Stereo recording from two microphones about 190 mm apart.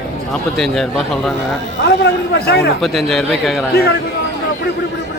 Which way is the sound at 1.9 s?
60° left (ahead or behind).